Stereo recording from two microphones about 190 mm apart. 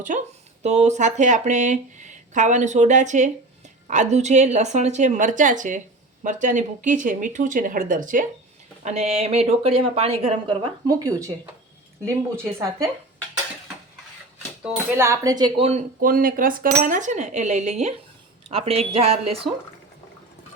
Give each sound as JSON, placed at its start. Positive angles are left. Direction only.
{"t": 0.1, "sound": "speech", "side_deg": -40}
{"t": 14.6, "sound": "speech", "side_deg": -10}
{"t": 16.0, "sound": "speech", "side_deg": -50}